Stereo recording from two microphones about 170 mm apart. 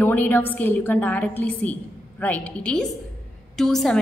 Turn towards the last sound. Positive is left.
turn(degrees=0)  # may be behind; listen again after turning